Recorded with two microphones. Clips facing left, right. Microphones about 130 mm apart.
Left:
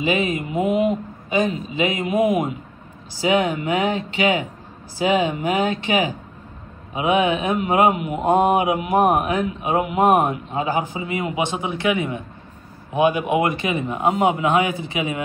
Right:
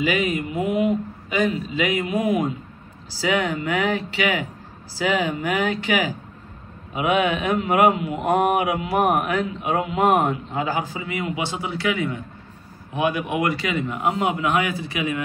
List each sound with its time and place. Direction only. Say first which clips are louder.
0.0 s a man's voice: left 1 dB; 20° left (ahead or behind)